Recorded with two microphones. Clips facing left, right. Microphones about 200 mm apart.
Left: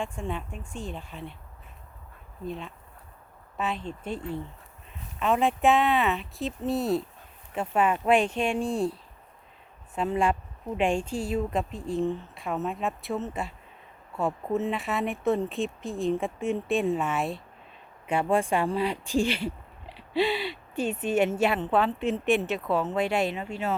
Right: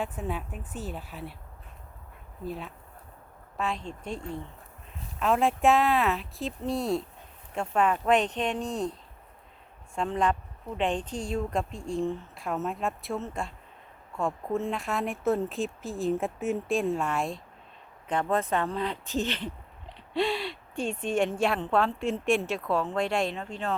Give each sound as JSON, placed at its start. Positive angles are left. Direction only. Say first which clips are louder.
{"t": 0.0, "sound": "speech", "louder": "even", "side_deg": -5}
{"t": 2.4, "sound": "speech", "louder": "left 1 dB", "side_deg": -5}
{"t": 5.2, "sound": "speech", "louder": "even", "side_deg": 0}